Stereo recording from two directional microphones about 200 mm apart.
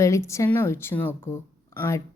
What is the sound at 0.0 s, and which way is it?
A woman's voice, 15° left (ahead or behind).